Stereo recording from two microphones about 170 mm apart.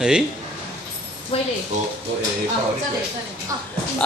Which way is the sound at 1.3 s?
35° left (ahead or behind).